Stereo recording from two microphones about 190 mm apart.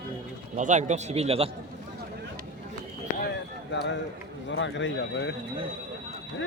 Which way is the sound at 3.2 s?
65° left (ahead or behind).